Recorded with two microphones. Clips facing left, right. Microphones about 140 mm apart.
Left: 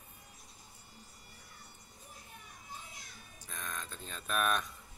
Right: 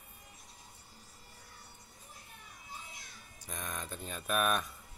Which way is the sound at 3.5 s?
15° right (ahead or behind).